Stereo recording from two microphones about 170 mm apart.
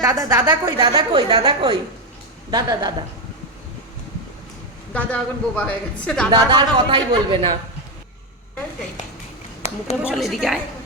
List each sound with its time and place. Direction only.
0.0 s a woman's voice: 20° right (ahead or behind)
4.9 s a woman's voice: 10° left (ahead or behind)
6.3 s a woman's voice: 25° right (ahead or behind)
10.0 s a woman's voice: centre (ahead or behind)